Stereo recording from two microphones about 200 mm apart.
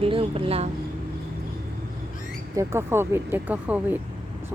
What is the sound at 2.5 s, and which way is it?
Speech, 10° right (ahead or behind).